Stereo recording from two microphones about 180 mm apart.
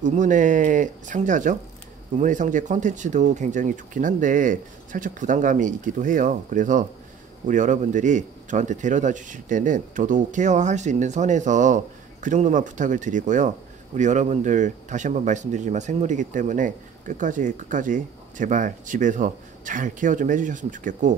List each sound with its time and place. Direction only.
0.0 s speech: 45° right (ahead or behind)